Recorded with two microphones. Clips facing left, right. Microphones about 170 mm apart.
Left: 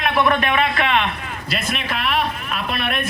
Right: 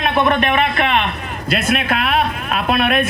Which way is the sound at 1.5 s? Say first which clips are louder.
Right 7 dB; 55° right (ahead or behind).